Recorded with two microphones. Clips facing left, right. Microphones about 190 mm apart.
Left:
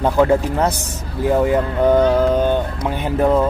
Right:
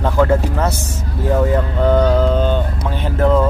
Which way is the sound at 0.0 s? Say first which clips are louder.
Left 1 dB; 15° left (ahead or behind).